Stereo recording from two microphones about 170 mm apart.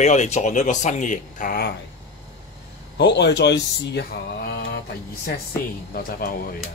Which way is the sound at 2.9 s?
85° left.